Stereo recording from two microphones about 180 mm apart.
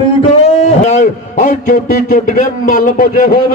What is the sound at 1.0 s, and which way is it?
A man's voice, 45° left (ahead or behind).